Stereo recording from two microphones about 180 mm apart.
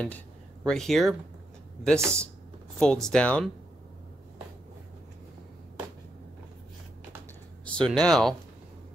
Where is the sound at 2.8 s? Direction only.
5° left (ahead or behind).